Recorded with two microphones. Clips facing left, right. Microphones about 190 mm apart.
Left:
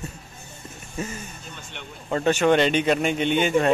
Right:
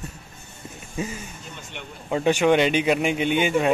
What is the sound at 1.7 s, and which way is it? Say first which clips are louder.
Speech: right 1 dB; 10° right (ahead or behind).